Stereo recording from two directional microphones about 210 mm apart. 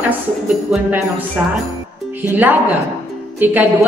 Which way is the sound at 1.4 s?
10° right (ahead or behind).